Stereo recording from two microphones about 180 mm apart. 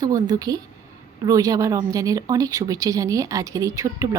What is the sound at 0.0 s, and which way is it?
A woman's voice, 20° right (ahead or behind).